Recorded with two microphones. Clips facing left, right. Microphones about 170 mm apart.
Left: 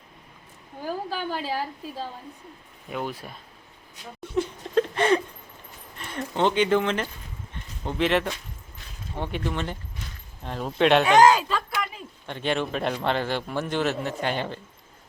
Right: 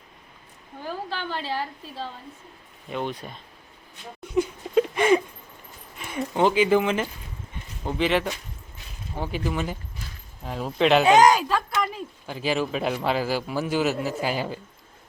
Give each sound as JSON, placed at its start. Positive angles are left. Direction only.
{"t": 0.9, "sound": "a woman's voice", "side_deg": 10}
{"t": 4.2, "sound": "a sound", "side_deg": -10}
{"t": 6.0, "sound": "a man's voice", "side_deg": -10}
{"t": 11.0, "sound": "speech", "side_deg": -20}
{"t": 12.2, "sound": "a man's voice", "side_deg": -5}